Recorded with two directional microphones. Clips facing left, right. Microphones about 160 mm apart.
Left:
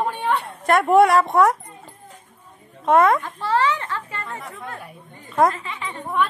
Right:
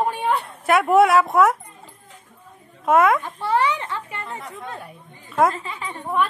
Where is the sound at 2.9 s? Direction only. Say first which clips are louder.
Left 1 dB; centre (ahead or behind).